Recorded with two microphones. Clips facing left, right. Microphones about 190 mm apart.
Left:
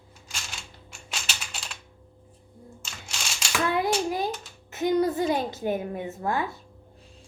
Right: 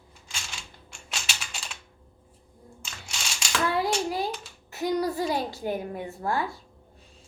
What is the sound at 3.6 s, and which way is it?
Hands, 20° left (ahead or behind).